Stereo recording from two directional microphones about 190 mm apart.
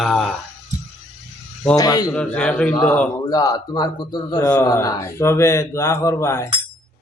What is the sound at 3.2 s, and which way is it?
A man's voice, 20° left (ahead or behind).